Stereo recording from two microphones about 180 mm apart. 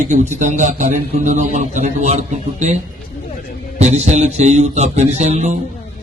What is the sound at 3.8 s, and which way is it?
A man's voice, 40° right (ahead or behind).